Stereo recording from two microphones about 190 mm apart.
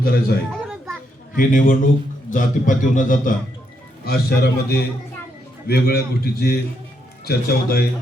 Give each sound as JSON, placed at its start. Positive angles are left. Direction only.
{"t": 0.0, "sound": "a man's voice", "side_deg": 55}
{"t": 0.5, "sound": "children playing", "side_deg": 0}
{"t": 1.4, "sound": "a man's voice", "side_deg": 45}
{"t": 4.0, "sound": "a man's voice", "side_deg": 55}